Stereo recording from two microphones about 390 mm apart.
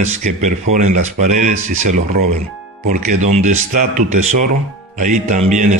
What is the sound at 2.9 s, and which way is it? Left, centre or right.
Speech, centre.